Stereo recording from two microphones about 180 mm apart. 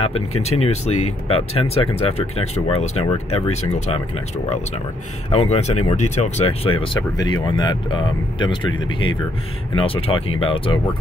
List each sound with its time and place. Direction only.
0.0 s speech: 35° left (ahead or behind)
5.3 s speech: 35° left (ahead or behind)